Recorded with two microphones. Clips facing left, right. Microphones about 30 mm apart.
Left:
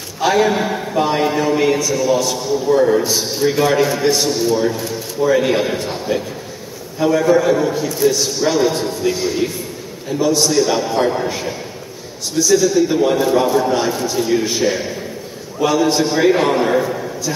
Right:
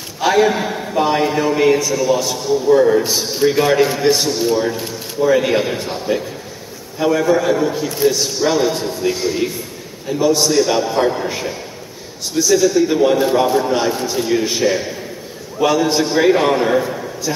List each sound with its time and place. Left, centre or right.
0.2 s a man's voice: centre
3.0 s a man's voice: centre